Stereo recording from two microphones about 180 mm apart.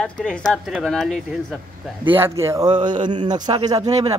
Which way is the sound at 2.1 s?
15° right (ahead or behind).